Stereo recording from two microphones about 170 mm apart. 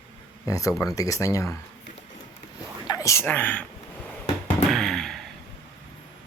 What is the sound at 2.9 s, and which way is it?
Speech, 20° left (ahead or behind).